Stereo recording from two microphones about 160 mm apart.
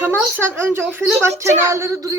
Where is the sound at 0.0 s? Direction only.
15° right (ahead or behind).